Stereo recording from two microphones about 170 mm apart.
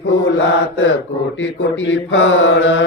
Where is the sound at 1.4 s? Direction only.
90° left.